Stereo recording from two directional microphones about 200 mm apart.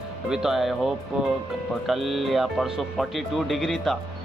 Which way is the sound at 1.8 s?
Centre (ahead or behind).